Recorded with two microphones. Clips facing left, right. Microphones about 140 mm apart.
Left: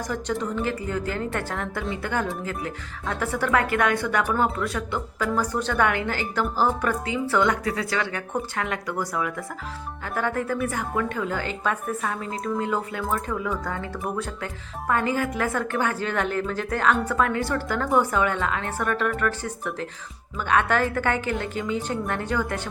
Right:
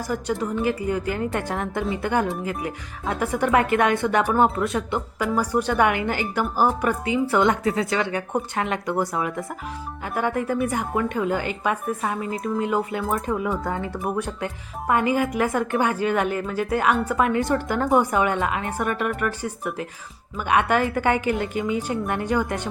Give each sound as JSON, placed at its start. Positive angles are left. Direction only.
{"t": 0.1, "sound": "a woman's voice", "side_deg": -10}